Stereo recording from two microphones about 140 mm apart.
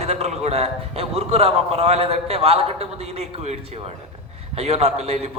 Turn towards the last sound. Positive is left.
turn(degrees=-45)  # may be behind; listen again after turning